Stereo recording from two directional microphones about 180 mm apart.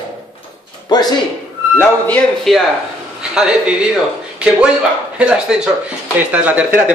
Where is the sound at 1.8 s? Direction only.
10° left (ahead or behind).